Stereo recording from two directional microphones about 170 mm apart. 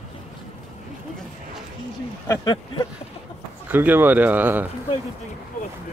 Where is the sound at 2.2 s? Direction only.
15° left (ahead or behind).